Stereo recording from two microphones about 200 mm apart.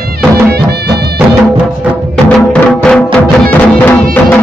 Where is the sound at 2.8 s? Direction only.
5° left (ahead or behind).